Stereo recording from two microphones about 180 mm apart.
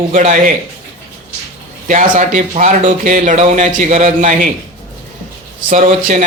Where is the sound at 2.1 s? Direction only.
45° right (ahead or behind).